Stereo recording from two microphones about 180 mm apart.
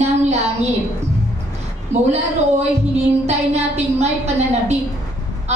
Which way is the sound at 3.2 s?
35° right (ahead or behind).